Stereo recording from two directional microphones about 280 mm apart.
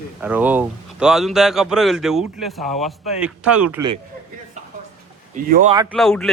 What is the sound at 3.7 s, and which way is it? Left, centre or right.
Speech, centre.